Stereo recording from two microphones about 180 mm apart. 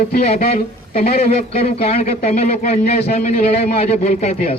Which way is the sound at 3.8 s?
35° left (ahead or behind).